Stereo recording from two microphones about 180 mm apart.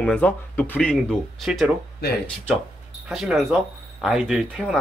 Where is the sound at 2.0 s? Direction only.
65° left (ahead or behind).